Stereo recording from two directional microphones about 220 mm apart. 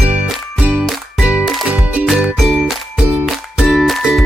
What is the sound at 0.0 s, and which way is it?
Music, 5° right (ahead or behind).